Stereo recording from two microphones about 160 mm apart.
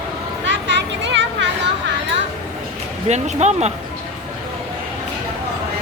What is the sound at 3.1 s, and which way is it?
Speech, 45° right (ahead or behind).